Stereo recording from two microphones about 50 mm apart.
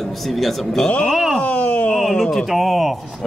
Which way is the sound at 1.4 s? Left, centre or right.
Left.